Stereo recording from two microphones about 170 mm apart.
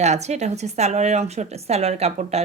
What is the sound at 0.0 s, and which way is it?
A woman's voice, 40° right (ahead or behind).